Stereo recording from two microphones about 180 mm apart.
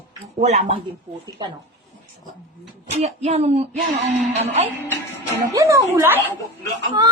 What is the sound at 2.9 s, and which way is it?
Speech, 35° right (ahead or behind).